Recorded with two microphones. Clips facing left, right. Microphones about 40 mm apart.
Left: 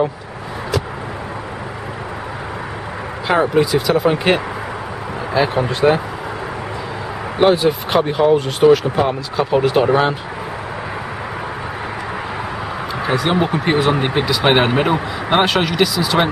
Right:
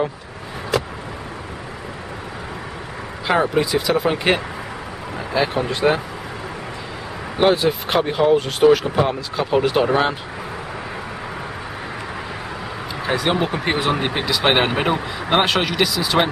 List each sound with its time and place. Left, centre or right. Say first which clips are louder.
3.3 s speech: left 3 dB; centre
7.3 s speech: left 3 dB; centre
13.0 s speech: left 2 dB; centre